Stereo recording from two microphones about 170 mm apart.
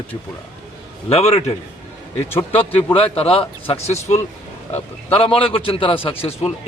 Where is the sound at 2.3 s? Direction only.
15° left (ahead or behind).